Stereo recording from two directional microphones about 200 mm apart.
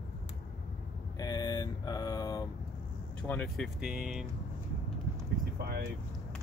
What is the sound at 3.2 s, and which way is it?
Speech, 5° left (ahead or behind).